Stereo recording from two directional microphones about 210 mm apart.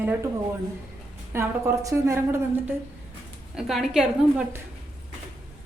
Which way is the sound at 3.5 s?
Centre (ahead or behind).